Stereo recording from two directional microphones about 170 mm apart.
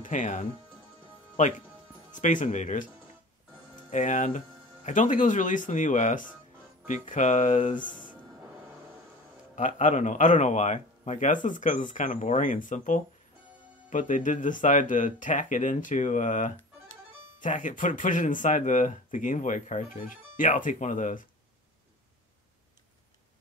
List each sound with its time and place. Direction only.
0.0 s speech: 50° left (ahead or behind)
2.1 s speech: 50° left (ahead or behind)
3.9 s speech: 50° left (ahead or behind)
9.6 s speech: 50° left (ahead or behind)